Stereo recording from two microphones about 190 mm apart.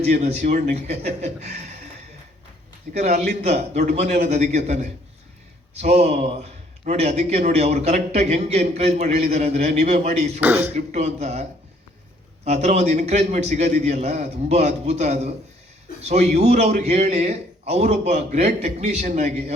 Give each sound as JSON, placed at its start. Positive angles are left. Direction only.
{"t": 0.0, "sound": "a man's voice", "side_deg": -35}
{"t": 2.9, "sound": "a man's voice", "side_deg": -35}
{"t": 10.4, "sound": "speech", "side_deg": -10}
{"t": 10.8, "sound": "a man's voice", "side_deg": -35}
{"t": 12.5, "sound": "a man's voice", "side_deg": -35}